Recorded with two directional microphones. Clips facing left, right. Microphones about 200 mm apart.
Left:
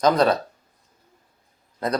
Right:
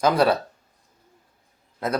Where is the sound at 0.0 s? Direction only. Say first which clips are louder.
Left 1 dB; 10° right (ahead or behind).